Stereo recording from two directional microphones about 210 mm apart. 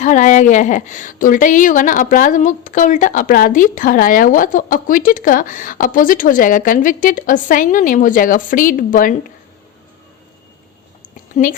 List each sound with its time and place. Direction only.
0.0 s a woman's voice: 35° left (ahead or behind)